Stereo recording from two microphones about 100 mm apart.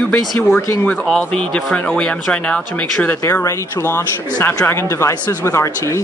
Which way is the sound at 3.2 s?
30° left (ahead or behind).